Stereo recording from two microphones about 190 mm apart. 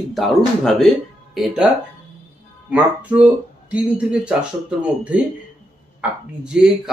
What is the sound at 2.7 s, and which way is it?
Speech, 10° right (ahead or behind).